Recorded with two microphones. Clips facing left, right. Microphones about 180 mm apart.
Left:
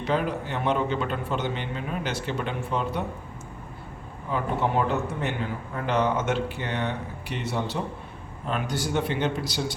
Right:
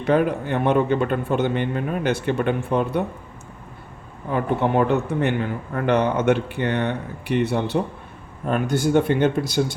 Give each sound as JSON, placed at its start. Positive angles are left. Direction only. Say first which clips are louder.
{"t": 0.0, "sound": "a man's voice", "louder": "right 7 dB", "side_deg": -55}
{"t": 4.3, "sound": "a man's voice", "louder": "right 5 dB", "side_deg": -55}